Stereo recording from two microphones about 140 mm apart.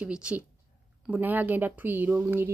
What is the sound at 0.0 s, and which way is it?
Speech, 10° right (ahead or behind).